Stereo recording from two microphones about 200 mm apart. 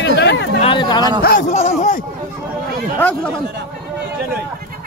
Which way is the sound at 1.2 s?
45° left (ahead or behind).